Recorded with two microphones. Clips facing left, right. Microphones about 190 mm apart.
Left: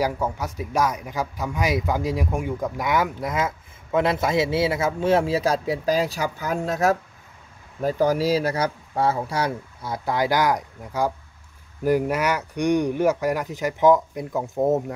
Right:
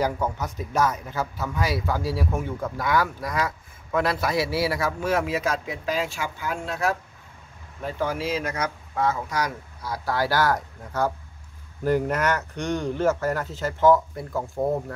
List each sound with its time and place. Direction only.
0.0 s speech: 10° left (ahead or behind)